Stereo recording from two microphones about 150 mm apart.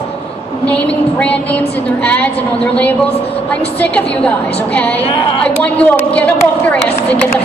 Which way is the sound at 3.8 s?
10° left (ahead or behind).